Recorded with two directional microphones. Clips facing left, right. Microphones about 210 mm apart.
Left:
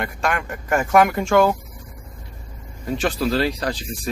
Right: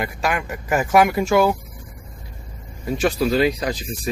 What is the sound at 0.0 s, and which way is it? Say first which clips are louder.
Speech: right 1 dB; 5° right (ahead or behind).